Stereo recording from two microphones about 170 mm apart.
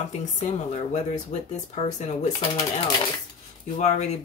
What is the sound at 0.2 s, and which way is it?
Speech, 45° left (ahead or behind).